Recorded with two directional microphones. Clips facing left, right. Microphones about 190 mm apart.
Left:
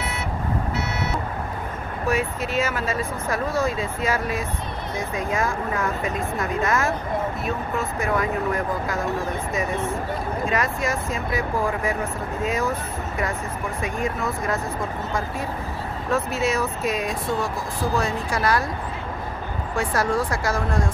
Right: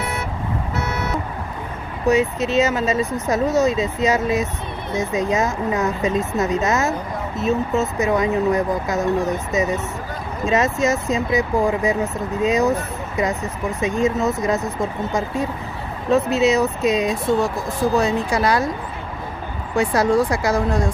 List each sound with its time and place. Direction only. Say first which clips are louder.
0.7 s car alarm: right 3 dB; 45° right (ahead or behind)
2.0 s speech: right 7 dB; 20° right (ahead or behind)
10.4 s speech: right 8 dB; 20° right (ahead or behind)
16.1 s speech: right 7 dB; 20° right (ahead or behind)
19.7 s speech: right 6 dB; 20° right (ahead or behind)